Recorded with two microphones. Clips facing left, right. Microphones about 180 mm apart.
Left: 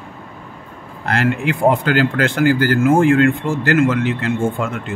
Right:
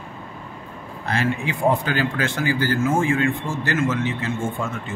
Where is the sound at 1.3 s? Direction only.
75° left (ahead or behind).